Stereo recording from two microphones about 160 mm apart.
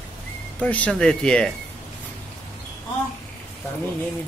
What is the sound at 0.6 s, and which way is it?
Speech, 10° left (ahead or behind).